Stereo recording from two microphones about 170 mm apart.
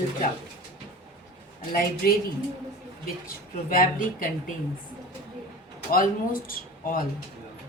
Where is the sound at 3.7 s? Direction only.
55° left (ahead or behind).